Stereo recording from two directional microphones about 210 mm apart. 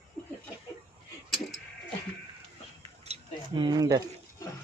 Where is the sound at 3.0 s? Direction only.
25° right (ahead or behind).